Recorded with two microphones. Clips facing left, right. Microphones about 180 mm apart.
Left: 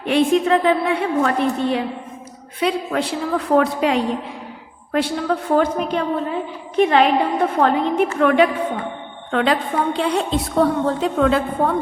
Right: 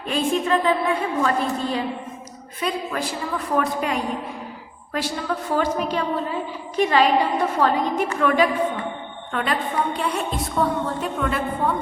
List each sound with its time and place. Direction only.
0.0 s a woman's voice: 75° left (ahead or behind)
4.9 s a woman's voice: 55° left (ahead or behind)
9.3 s a woman's voice: 90° left